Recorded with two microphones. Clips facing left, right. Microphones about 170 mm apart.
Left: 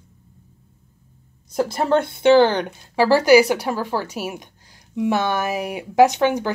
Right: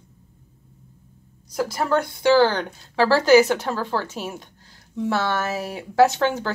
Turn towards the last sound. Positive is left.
turn(degrees=15)  # may be behind; listen again after turning